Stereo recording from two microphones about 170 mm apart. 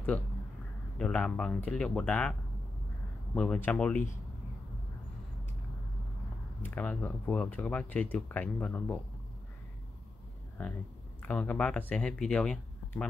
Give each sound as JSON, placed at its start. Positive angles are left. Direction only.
{"t": 0.9, "sound": "speech", "side_deg": 5}
{"t": 3.3, "sound": "speech", "side_deg": 10}
{"t": 6.6, "sound": "speech", "side_deg": 10}
{"t": 11.2, "sound": "speech", "side_deg": 10}